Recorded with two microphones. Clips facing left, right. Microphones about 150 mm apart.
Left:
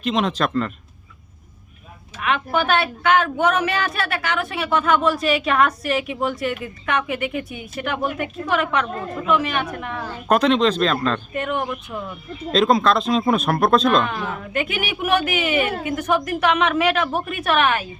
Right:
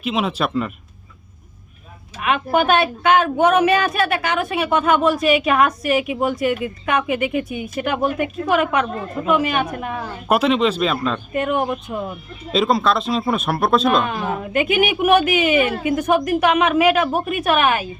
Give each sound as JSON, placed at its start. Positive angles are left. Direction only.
{"t": 0.0, "sound": "a woman's voice", "side_deg": -5}
{"t": 2.2, "sound": "a woman's voice", "side_deg": -15}
{"t": 11.6, "sound": "speech", "side_deg": -30}
{"t": 12.5, "sound": "speech", "side_deg": -5}
{"t": 14.5, "sound": "a woman's voice", "side_deg": -15}